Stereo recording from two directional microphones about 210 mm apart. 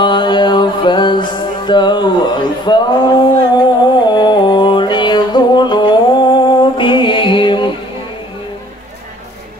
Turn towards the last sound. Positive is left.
turn(degrees=25)  # may be behind; listen again after turning